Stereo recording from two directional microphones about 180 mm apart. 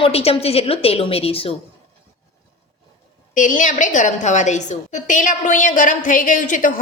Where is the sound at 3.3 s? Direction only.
45° left (ahead or behind).